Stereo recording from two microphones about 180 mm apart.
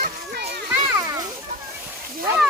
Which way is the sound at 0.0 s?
65° right (ahead or behind).